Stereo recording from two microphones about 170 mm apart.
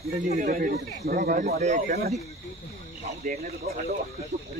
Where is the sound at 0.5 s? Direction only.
60° right (ahead or behind); by 2.1 s 40° right (ahead or behind).